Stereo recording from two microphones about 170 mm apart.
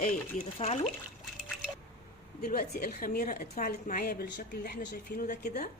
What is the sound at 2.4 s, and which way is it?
Speech, 60° left (ahead or behind).